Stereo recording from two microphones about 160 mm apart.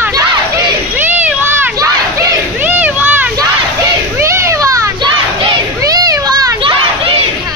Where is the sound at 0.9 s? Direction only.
10° right (ahead or behind).